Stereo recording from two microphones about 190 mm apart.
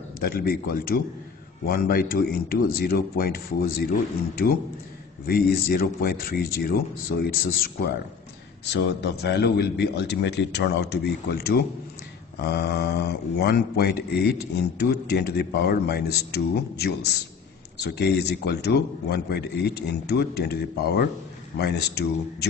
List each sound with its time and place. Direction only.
0.2 s a man's voice: 55° left (ahead or behind)
5.2 s a man's voice: 50° left (ahead or behind)
8.6 s speech: 65° left (ahead or behind)